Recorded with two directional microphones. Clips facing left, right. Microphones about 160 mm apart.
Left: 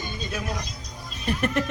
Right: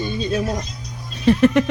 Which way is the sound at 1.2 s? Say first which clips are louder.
Right 11 dB; 90° right.